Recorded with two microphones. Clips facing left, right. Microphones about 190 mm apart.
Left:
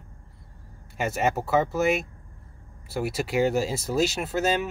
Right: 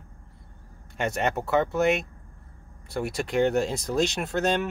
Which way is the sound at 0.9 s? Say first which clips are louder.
Left 1 dB; 5° left (ahead or behind).